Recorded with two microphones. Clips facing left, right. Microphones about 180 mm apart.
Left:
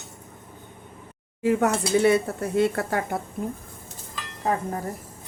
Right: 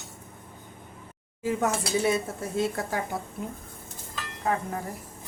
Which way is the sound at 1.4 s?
65° left (ahead or behind).